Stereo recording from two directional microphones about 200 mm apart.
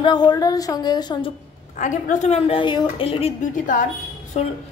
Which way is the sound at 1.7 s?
40° left (ahead or behind).